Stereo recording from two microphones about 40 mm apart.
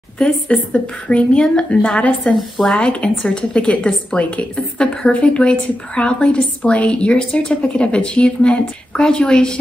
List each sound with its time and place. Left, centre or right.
0.2 s a woman's voice: left